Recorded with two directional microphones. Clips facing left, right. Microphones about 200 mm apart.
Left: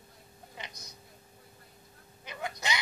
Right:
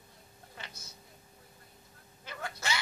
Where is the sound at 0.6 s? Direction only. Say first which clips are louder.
Left 3 dB; 15° left (ahead or behind).